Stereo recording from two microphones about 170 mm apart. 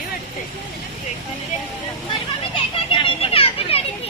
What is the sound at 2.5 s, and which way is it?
A child's voice, 30° left (ahead or behind).